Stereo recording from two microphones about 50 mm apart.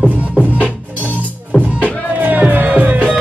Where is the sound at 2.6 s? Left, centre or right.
Right.